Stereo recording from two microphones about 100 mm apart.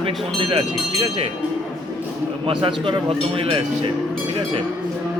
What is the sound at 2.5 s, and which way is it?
Speech, 55° right (ahead or behind).